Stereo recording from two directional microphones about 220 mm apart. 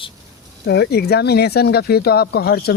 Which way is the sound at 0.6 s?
50° left (ahead or behind).